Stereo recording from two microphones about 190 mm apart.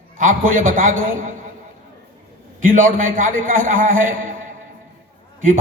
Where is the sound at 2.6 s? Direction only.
45° right (ahead or behind).